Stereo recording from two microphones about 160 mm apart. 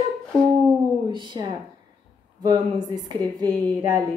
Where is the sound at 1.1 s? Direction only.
30° right (ahead or behind).